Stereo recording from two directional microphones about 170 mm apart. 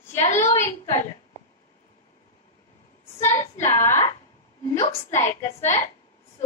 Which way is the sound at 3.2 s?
15° left (ahead or behind).